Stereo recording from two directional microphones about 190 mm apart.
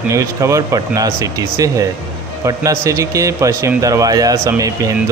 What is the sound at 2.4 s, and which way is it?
Speech, 15° right (ahead or behind).